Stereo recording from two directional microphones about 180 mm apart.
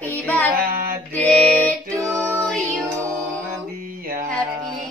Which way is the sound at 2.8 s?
15° right (ahead or behind).